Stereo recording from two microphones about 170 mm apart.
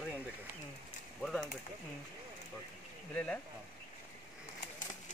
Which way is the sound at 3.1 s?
5° left (ahead or behind).